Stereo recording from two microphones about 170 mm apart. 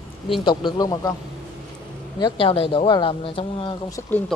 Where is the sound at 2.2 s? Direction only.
30° left (ahead or behind).